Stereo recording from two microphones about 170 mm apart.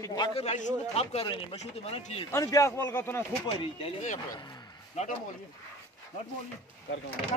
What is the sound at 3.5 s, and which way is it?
Speech, 30° left (ahead or behind).